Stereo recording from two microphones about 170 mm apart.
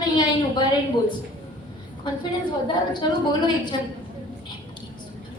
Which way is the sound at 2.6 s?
25° left (ahead or behind).